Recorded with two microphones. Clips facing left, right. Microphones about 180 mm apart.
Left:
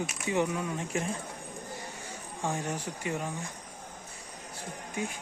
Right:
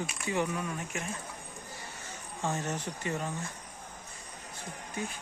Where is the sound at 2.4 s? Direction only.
15° left (ahead or behind).